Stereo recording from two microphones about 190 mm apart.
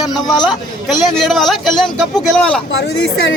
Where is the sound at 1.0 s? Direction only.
Centre (ahead or behind).